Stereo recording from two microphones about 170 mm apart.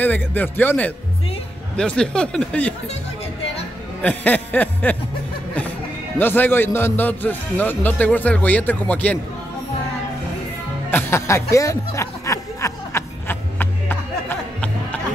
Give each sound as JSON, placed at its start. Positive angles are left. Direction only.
{"t": 0.0, "sound": "a man's voice", "side_deg": 10}
{"t": 4.0, "sound": "a man's voice", "side_deg": 10}
{"t": 6.1, "sound": "a man's voice", "side_deg": 10}
{"t": 10.9, "sound": "music", "side_deg": 15}